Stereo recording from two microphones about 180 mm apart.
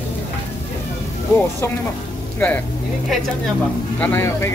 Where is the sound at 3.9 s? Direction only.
10° left (ahead or behind).